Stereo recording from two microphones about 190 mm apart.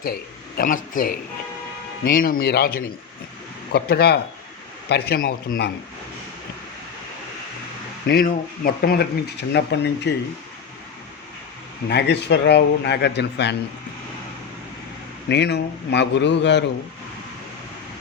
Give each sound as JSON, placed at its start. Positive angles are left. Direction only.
{"t": 0.0, "sound": "a man's voice", "side_deg": 55}
{"t": 8.0, "sound": "a man's voice", "side_deg": 50}
{"t": 11.9, "sound": "a man's voice", "side_deg": 60}
{"t": 15.3, "sound": "a man's voice", "side_deg": 60}